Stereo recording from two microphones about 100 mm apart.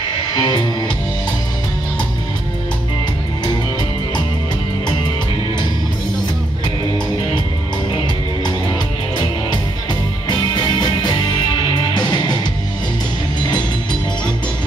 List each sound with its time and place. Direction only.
0.4 s music: 45° left (ahead or behind)
10.2 s music: 45° left (ahead or behind)